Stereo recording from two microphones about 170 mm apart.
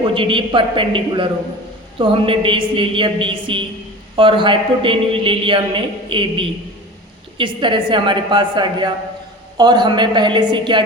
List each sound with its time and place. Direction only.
0.1 s a man's voice: 30° right (ahead or behind)